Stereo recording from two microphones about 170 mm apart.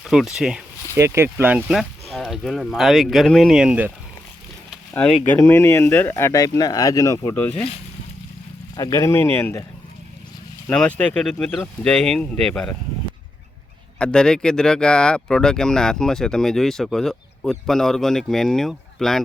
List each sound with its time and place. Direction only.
0.0 s speech: centre (ahead or behind)
0.9 s speech: 15° right (ahead or behind)
4.9 s speech: 10° left (ahead or behind)
7.5 s speech: 35° left (ahead or behind)
8.7 s speech: 20° left (ahead or behind)
10.7 s speech: 5° left (ahead or behind)
14.0 s speech: 5° left (ahead or behind)